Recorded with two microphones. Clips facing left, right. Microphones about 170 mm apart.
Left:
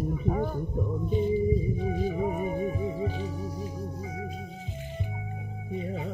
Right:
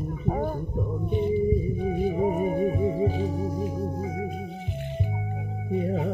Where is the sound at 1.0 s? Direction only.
60° right (ahead or behind).